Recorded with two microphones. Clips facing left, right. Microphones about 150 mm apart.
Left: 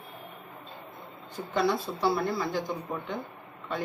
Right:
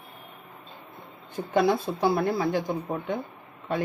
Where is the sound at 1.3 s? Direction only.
55° right (ahead or behind).